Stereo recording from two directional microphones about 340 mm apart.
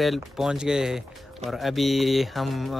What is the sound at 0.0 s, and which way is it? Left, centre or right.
Speech, centre.